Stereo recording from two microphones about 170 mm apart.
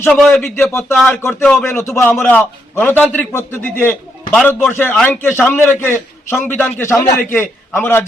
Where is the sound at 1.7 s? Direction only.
15° left (ahead or behind).